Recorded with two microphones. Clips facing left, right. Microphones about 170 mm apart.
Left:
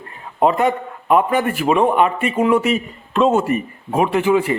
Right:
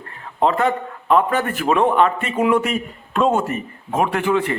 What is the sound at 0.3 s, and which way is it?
A man's voice, 15° left (ahead or behind).